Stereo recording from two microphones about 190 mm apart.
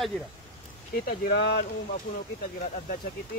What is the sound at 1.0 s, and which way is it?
Speech, 55° left (ahead or behind).